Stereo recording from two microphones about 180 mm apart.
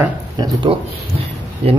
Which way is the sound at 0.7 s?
25° right (ahead or behind).